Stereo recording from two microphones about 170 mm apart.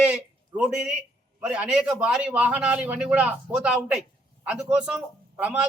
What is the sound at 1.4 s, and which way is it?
A man's voice, 5° right (ahead or behind).